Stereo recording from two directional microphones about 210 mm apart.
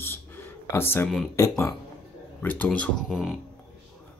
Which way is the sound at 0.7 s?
10° left (ahead or behind).